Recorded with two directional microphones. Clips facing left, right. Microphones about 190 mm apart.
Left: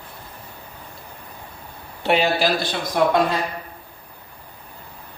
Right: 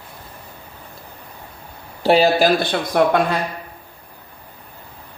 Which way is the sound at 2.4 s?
55° right (ahead or behind).